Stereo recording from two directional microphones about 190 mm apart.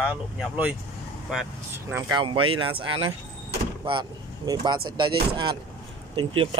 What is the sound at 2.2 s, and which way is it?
Speech, 25° right (ahead or behind).